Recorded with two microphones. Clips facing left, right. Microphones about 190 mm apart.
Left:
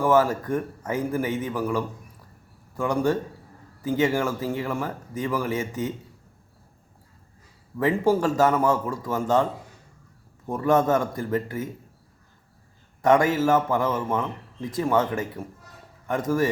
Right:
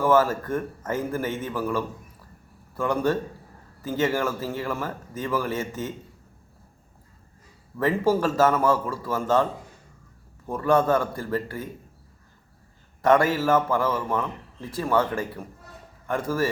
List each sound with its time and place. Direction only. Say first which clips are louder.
0.0 s a man's voice: even; 15° left (ahead or behind)
7.8 s a man's voice: left 1 dB; 15° left (ahead or behind)
13.0 s a man's voice: left 1 dB; 15° left (ahead or behind)